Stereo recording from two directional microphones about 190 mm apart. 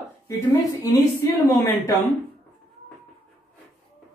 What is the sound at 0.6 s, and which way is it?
Speech, 15° left (ahead or behind).